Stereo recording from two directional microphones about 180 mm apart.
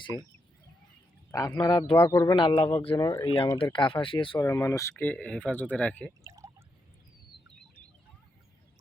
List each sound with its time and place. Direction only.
0.1 s speech: 20° left (ahead or behind)
1.3 s speech: 20° left (ahead or behind)
4.4 s speech: 15° left (ahead or behind)
6.2 s a sound: 15° right (ahead or behind)